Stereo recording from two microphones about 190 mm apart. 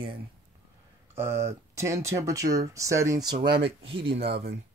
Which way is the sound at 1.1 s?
15° right (ahead or behind).